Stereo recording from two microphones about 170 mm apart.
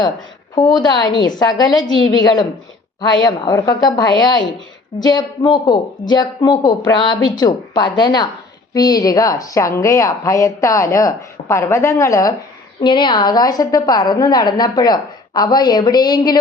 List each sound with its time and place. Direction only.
0.5 s a woman's voice: 25° left (ahead or behind)